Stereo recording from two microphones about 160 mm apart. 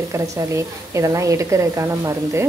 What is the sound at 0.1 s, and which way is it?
A woman's voice, 20° right (ahead or behind).